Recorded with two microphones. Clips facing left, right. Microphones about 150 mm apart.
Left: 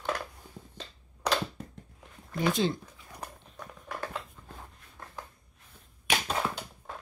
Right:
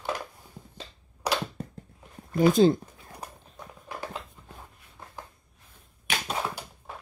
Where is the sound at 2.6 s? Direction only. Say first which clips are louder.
Right 9 dB; 40° right (ahead or behind).